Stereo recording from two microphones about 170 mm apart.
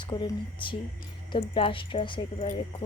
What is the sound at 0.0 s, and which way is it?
A woman's voice, 30° left (ahead or behind).